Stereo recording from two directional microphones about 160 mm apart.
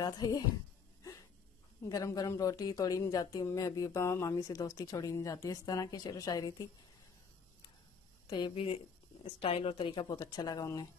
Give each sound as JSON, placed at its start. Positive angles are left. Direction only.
{"t": 0.0, "sound": "speech", "side_deg": 25}
{"t": 1.9, "sound": "speech", "side_deg": 25}
{"t": 8.3, "sound": "speech", "side_deg": 30}